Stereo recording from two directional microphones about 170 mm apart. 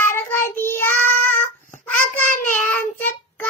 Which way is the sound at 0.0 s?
15° left (ahead or behind).